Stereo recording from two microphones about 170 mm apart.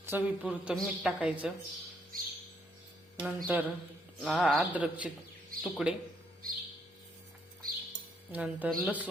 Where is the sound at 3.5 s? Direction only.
10° right (ahead or behind).